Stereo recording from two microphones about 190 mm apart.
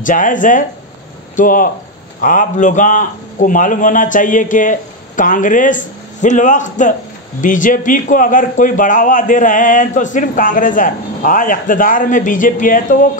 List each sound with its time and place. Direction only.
0.0 s a man's voice: 45° left (ahead or behind)